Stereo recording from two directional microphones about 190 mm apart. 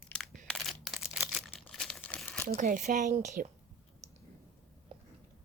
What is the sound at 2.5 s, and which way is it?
Speech, 40° right (ahead or behind).